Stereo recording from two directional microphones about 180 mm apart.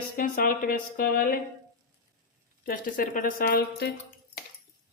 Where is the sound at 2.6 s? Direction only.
50° left (ahead or behind).